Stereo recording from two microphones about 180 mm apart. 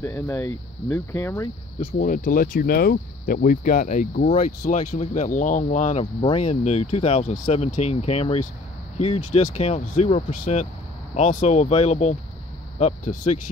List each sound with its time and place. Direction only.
0.0 s speech: 15° left (ahead or behind)
2.0 s speech: 50° left (ahead or behind)